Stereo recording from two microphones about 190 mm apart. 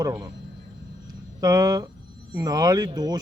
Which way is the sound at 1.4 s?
20° right (ahead or behind).